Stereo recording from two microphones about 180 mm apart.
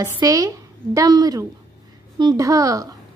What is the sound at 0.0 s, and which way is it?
A woman's voice, 20° right (ahead or behind).